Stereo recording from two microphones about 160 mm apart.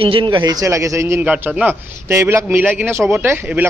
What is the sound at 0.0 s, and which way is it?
A man's voice, 30° right (ahead or behind).